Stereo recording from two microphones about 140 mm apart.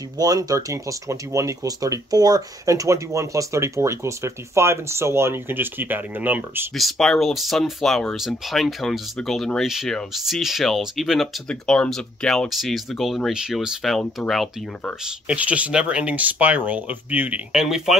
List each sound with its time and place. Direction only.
0.2 s speech: 25° right (ahead or behind)
6.8 s speech: centre (ahead or behind)
15.3 s speech: 10° right (ahead or behind)